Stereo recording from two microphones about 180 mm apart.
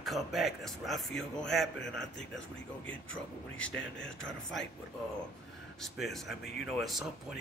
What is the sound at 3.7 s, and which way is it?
Speech, 90° left.